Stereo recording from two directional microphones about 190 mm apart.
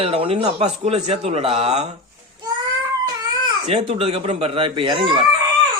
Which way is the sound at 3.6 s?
30° right (ahead or behind).